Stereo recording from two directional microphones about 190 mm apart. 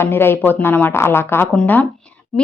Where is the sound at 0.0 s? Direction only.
10° left (ahead or behind).